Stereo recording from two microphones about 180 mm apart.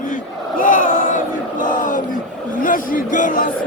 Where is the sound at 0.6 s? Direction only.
50° left (ahead or behind).